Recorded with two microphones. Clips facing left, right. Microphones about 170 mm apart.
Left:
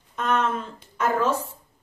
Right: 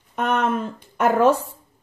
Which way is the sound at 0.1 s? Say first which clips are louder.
Right 3 dB; 65° right (ahead or behind).